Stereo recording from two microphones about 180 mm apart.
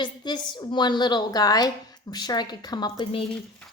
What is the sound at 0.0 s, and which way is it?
A woman's voice, 25° left (ahead or behind).